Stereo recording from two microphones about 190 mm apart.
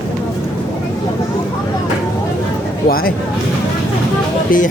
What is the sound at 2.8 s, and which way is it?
Speech, 50° left (ahead or behind).